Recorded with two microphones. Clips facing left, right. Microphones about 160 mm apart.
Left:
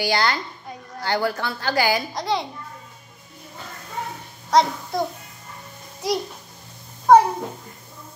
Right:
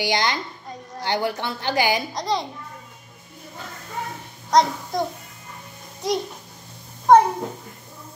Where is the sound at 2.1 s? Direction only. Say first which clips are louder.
Even; centre (ahead or behind).